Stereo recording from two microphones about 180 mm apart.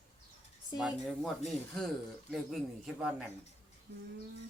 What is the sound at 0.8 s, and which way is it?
Speech, centre (ahead or behind).